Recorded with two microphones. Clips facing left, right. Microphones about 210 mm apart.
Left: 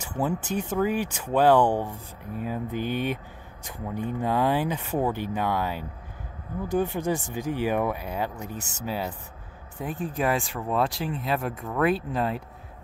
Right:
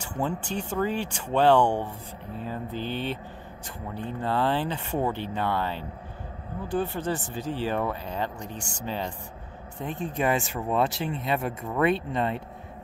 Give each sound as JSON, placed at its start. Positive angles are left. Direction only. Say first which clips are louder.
{"t": 0.0, "sound": "speech", "louder": "left 2 dB", "side_deg": 10}